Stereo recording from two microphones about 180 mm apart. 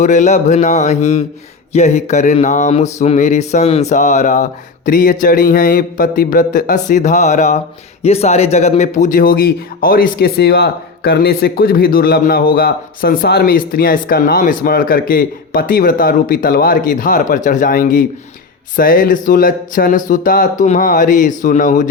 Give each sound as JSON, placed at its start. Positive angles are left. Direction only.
{"t": 0.0, "sound": "speech", "side_deg": 40}